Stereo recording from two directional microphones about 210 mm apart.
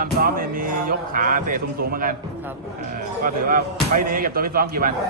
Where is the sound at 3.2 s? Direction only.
40° right (ahead or behind).